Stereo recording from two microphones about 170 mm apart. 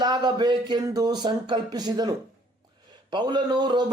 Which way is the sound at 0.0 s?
25° right (ahead or behind).